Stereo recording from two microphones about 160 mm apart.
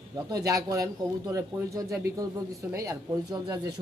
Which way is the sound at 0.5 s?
20° right (ahead or behind).